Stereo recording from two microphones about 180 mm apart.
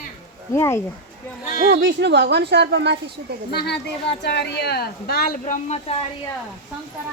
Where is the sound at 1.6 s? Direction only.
80° right.